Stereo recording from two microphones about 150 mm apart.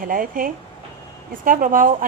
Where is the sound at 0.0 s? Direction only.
65° right (ahead or behind).